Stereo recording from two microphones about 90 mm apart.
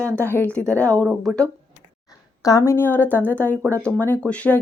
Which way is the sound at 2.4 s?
35° left (ahead or behind).